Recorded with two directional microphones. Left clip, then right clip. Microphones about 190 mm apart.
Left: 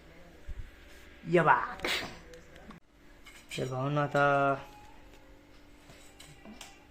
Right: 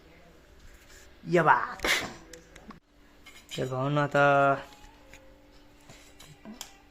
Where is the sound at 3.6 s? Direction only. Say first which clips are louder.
Right 4 dB; 15° right (ahead or behind).